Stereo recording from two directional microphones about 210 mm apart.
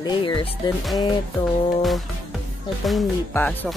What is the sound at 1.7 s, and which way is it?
Speech, centre (ahead or behind).